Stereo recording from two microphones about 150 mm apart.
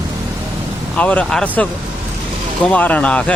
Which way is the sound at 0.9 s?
10° left (ahead or behind).